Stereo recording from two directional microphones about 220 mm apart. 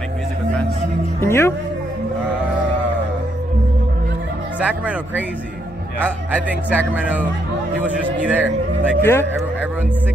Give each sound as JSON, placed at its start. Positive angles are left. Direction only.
{"t": 1.2, "sound": "speech", "side_deg": 10}
{"t": 4.6, "sound": "a man's voice", "side_deg": -5}
{"t": 9.0, "sound": "speech", "side_deg": 10}